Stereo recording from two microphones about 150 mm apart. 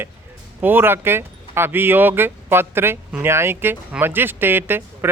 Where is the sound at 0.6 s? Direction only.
15° right (ahead or behind).